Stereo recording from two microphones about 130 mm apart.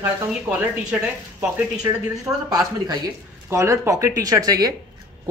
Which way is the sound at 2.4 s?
30° right (ahead or behind).